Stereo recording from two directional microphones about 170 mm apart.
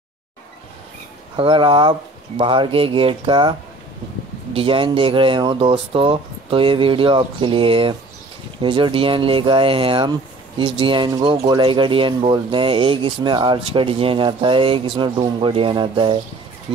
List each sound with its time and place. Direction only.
1.3 s speech: 30° right (ahead or behind)
4.6 s speech: 30° right (ahead or behind)